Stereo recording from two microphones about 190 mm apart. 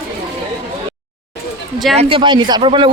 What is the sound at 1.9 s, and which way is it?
Speech, 25° right (ahead or behind).